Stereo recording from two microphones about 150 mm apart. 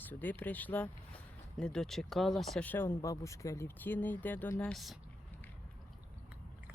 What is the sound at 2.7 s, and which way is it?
Speech, 15° left (ahead or behind).